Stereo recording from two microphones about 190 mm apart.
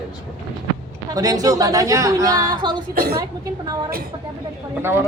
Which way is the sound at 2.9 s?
50° right (ahead or behind).